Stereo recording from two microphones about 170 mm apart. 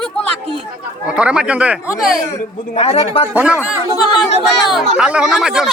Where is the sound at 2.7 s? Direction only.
35° left (ahead or behind).